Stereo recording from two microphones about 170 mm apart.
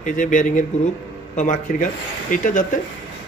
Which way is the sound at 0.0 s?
50° left (ahead or behind).